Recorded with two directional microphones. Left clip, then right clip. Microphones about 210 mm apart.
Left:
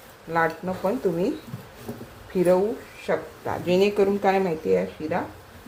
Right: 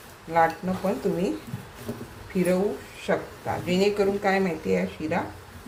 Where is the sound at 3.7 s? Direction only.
35° left (ahead or behind).